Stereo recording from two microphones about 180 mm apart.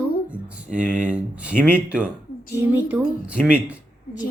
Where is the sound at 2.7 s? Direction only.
10° right (ahead or behind).